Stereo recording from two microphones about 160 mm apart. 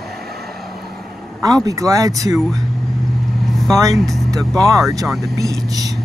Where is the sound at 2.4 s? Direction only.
Centre (ahead or behind).